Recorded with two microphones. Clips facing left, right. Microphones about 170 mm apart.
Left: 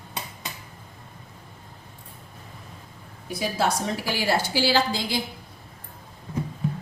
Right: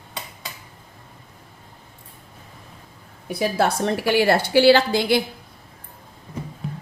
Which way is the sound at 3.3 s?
60° right (ahead or behind).